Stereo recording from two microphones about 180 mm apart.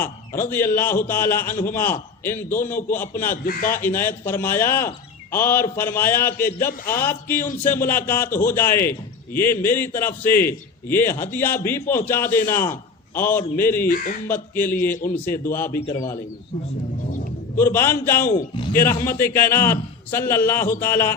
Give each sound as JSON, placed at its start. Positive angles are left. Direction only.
{"t": 0.0, "sound": "a man's voice", "side_deg": 10}
{"t": 3.4, "sound": "a man's voice", "side_deg": 50}
{"t": 3.8, "sound": "a man's voice", "side_deg": 10}
{"t": 13.8, "sound": "a man's voice", "side_deg": 50}
{"t": 14.3, "sound": "a man's voice", "side_deg": 10}
{"t": 17.6, "sound": "a man's voice", "side_deg": 10}